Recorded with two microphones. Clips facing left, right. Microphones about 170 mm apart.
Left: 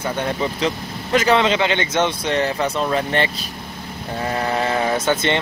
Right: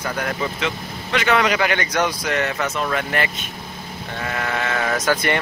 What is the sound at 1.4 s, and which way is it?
Speech, 25° left (ahead or behind).